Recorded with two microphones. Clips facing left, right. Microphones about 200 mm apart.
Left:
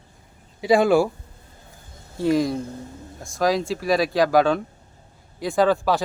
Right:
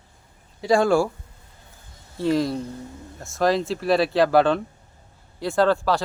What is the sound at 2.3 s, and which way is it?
Speech, 10° left (ahead or behind).